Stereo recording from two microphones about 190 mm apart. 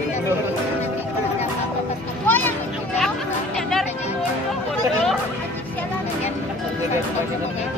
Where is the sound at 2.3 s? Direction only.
10° left (ahead or behind).